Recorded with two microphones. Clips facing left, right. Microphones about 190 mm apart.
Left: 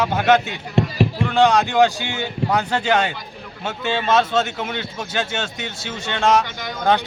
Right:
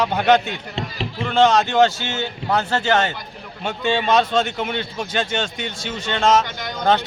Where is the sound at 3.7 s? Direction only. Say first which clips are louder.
Right 1 dB; 5° left (ahead or behind).